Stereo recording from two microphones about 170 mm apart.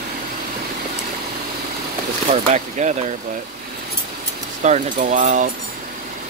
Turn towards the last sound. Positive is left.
turn(degrees=-45)  # may be behind; listen again after turning